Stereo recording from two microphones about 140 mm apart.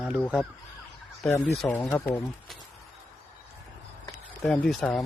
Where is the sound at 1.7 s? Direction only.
15° left (ahead or behind).